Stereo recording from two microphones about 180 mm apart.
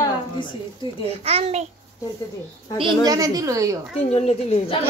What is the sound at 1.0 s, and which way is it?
Speech, 35° right (ahead or behind).